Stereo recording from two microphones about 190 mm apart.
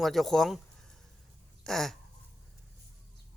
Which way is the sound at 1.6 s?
Centre (ahead or behind).